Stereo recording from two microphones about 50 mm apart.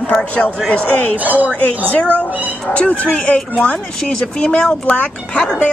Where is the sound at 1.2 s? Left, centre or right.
Right.